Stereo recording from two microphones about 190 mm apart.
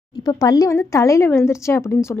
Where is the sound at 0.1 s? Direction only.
20° left (ahead or behind).